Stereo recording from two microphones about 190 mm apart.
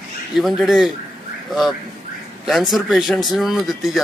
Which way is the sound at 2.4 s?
Centre (ahead or behind).